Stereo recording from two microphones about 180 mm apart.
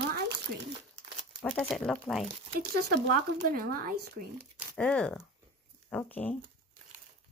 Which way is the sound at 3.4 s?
55° right (ahead or behind).